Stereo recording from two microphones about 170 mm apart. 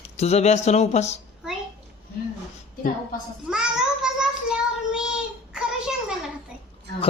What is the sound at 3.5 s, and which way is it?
Child singing, 5° right (ahead or behind).